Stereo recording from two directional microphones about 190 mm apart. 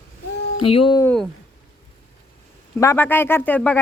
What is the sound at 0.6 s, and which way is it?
Speech, 30° left (ahead or behind).